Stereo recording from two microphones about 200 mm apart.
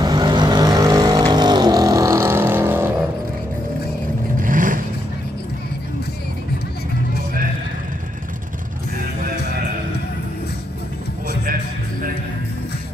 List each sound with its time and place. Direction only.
0.0 s vehicle: 20° right (ahead or behind)
4.4 s vehicle: 40° right (ahead or behind)